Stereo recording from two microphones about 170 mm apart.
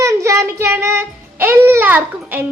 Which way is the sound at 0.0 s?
15° right (ahead or behind).